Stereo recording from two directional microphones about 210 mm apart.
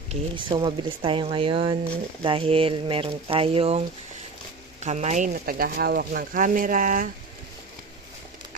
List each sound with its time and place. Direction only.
0.1 s speech: 25° right (ahead or behind); by 7.1 s 40° right (ahead or behind)